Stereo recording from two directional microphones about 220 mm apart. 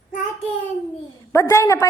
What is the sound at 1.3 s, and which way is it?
Speech, 15° left (ahead or behind).